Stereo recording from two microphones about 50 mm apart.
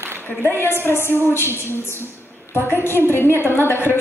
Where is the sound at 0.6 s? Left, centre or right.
Left.